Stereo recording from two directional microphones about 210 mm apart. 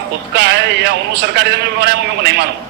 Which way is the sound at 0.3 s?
50° right (ahead or behind).